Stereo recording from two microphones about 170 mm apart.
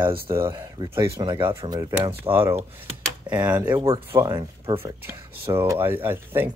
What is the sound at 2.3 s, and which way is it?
Speech, 15° right (ahead or behind).